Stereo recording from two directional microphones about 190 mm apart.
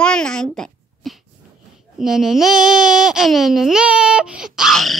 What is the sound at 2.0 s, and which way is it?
A child's voice, centre (ahead or behind).